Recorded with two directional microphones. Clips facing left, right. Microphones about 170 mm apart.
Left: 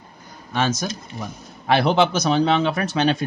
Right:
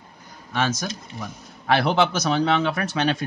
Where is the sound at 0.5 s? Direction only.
25° left (ahead or behind).